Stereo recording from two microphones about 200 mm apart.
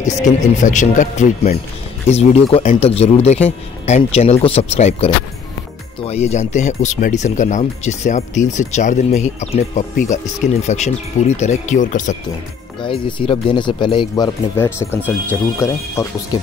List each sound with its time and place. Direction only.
0.0 s speech: 35° left (ahead or behind)
12.8 s speech: 25° left (ahead or behind)